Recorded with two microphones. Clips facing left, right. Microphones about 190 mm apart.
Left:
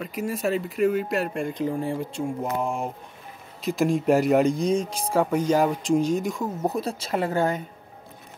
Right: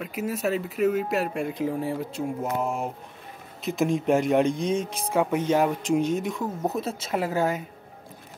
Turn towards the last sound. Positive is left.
turn(degrees=-5)  # may be behind; listen again after turning